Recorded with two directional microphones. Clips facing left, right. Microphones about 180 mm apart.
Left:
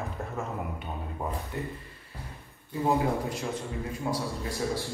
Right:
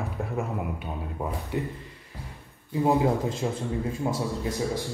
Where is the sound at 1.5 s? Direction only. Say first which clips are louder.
Right 9 dB; 15° right (ahead or behind).